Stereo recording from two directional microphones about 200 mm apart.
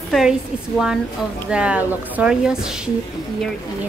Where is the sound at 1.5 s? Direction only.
5° right (ahead or behind).